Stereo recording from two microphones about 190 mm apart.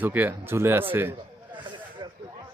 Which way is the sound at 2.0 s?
20° right (ahead or behind).